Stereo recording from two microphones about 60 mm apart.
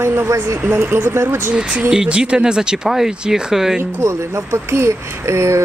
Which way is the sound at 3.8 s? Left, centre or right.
Right.